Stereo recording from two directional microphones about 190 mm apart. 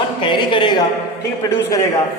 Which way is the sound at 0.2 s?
25° left (ahead or behind).